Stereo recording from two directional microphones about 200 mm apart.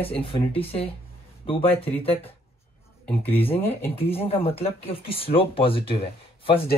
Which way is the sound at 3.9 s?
30° left (ahead or behind).